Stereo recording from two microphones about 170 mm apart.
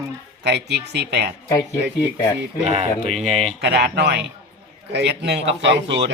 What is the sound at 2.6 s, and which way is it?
Speech, 40° right (ahead or behind).